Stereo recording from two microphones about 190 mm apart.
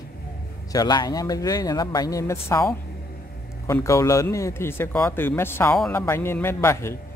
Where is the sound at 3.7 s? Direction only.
15° left (ahead or behind).